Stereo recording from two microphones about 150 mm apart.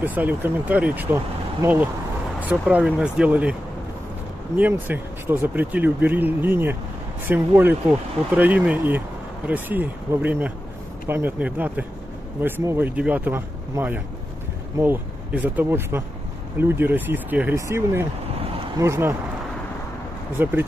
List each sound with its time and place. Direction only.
0.0 s speech: 10° right (ahead or behind)
4.6 s speech: 10° right (ahead or behind)
20.4 s speech: 15° right (ahead or behind)